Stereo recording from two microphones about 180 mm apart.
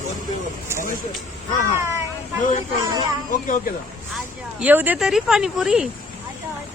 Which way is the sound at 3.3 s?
50° left (ahead or behind).